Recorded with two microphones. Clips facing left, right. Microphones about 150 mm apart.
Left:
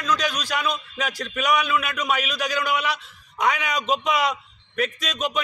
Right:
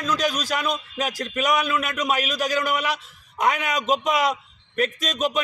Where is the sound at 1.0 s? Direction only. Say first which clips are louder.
Right 1 dB; 40° right (ahead or behind).